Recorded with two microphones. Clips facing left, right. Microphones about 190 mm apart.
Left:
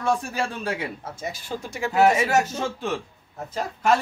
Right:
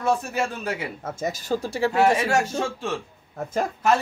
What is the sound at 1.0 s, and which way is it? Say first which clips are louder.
Speech: right 5 dB; 45° right (ahead or behind).